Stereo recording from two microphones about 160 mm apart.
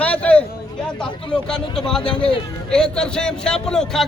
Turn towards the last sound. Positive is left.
turn(degrees=5)  # may be behind; listen again after turning